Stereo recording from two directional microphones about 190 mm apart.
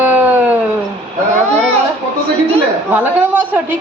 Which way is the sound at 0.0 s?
10° right (ahead or behind).